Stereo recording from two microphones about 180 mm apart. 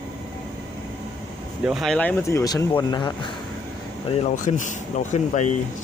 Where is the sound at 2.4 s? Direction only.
20° left (ahead or behind).